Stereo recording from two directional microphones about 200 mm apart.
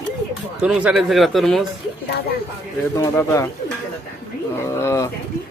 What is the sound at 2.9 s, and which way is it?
Speech, 15° left (ahead or behind).